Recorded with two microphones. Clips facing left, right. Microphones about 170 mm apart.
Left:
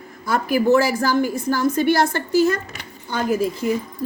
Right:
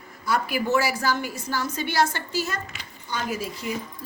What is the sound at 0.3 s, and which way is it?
A woman's voice, 45° left (ahead or behind).